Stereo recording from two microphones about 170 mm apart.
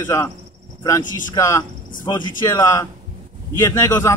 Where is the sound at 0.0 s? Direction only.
15° left (ahead or behind).